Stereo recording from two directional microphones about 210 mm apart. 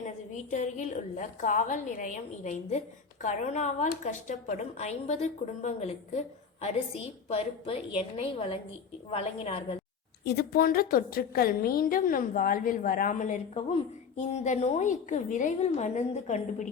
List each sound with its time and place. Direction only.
0.5 s a woman's voice: 35° left (ahead or behind)
7.3 s a woman's voice: 30° left (ahead or behind)
10.2 s a woman's voice: 50° left (ahead or behind); by 16.6 s 35° left (ahead or behind)